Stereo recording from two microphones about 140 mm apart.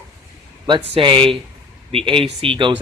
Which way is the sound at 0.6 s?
35° right (ahead or behind).